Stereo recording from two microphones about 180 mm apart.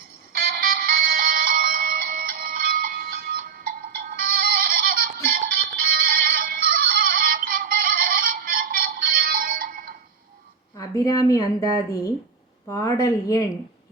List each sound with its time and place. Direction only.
0.3 s music: 55° right (ahead or behind)
10.8 s a woman's voice: 20° left (ahead or behind)